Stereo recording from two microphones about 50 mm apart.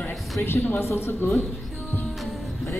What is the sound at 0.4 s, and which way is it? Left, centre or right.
Speech, left.